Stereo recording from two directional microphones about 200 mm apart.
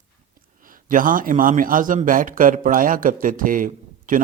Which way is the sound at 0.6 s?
45° right (ahead or behind).